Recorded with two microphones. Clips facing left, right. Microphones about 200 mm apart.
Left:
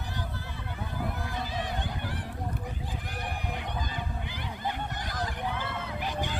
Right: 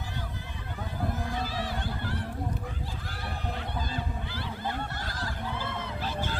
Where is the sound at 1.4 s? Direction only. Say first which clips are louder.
Right 1 dB; 20° left (ahead or behind).